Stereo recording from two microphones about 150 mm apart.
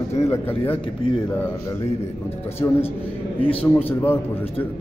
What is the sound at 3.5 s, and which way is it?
Music, 40° left (ahead or behind).